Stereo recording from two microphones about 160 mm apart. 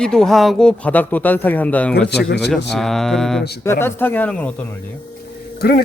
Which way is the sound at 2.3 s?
90° left.